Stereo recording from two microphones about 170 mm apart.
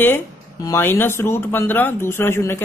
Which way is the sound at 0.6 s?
15° left (ahead or behind).